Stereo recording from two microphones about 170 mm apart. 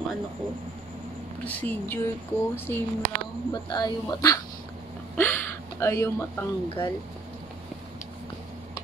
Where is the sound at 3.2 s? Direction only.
25° left (ahead or behind).